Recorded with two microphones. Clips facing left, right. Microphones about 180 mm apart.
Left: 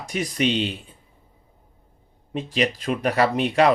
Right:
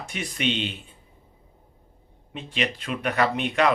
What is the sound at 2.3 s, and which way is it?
Speech, 40° left (ahead or behind).